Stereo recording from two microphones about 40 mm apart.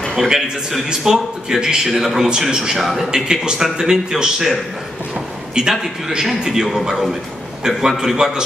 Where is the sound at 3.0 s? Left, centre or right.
Centre.